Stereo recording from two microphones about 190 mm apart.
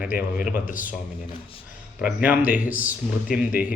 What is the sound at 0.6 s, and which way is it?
Speech, 45° left (ahead or behind).